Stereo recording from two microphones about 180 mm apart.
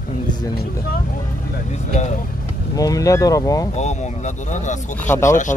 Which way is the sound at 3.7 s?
40° left (ahead or behind).